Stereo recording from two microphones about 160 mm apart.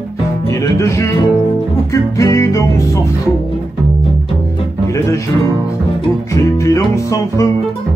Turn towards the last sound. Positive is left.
turn(degrees=20)  # may be behind; listen again after turning